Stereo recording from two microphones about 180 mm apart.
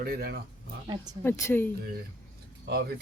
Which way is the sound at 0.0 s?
55° right (ahead or behind).